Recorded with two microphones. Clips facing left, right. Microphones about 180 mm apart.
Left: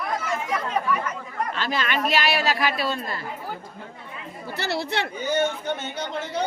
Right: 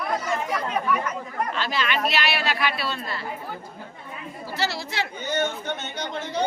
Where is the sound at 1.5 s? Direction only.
45° left (ahead or behind).